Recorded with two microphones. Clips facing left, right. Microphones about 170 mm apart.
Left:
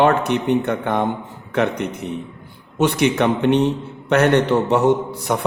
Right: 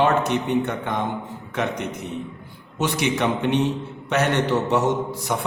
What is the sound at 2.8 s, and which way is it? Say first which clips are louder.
A man's voice: left 6 dB; 60° left (ahead or behind).